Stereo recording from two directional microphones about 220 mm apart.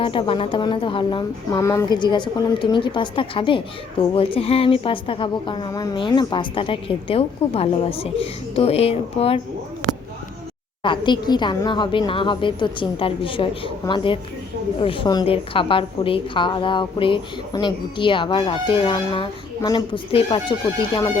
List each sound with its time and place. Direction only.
0.0 s a woman's voice: 25° left (ahead or behind)
10.8 s a woman's voice: 20° left (ahead or behind)